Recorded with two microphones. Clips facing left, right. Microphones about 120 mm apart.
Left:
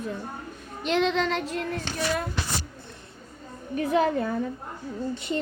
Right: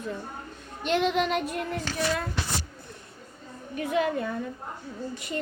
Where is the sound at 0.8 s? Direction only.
5° right (ahead or behind).